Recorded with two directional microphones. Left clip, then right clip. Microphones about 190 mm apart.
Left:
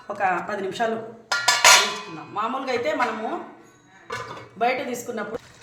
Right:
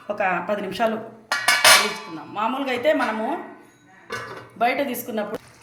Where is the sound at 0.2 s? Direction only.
35° right (ahead or behind).